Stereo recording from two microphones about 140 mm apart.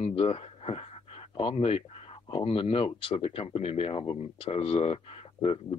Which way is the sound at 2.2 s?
40° left (ahead or behind).